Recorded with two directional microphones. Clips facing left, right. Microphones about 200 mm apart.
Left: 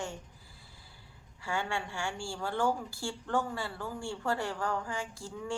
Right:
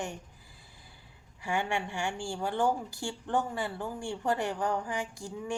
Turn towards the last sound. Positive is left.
turn(degrees=-15)  # may be behind; listen again after turning